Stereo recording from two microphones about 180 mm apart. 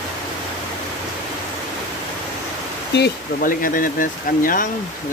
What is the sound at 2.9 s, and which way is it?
Speech, 55° left (ahead or behind).